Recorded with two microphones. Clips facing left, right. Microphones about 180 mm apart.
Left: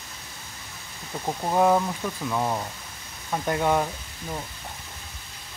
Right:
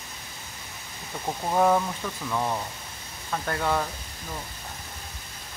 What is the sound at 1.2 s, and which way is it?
Speech, 10° left (ahead or behind).